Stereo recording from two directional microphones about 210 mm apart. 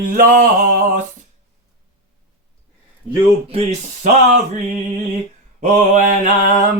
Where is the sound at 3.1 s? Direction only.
30° right (ahead or behind).